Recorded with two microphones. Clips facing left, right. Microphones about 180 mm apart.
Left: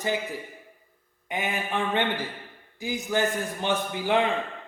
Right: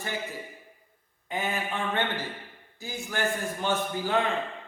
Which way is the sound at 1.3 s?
15° left (ahead or behind).